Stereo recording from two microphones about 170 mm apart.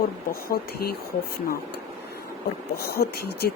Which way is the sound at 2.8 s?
65° left (ahead or behind).